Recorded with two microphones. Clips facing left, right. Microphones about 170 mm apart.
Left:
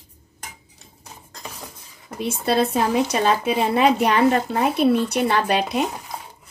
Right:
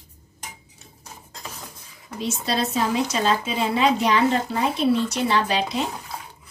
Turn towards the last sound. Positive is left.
turn(degrees=20)  # may be behind; listen again after turning